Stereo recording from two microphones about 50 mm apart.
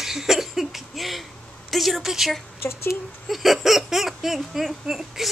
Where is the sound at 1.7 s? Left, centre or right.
Centre.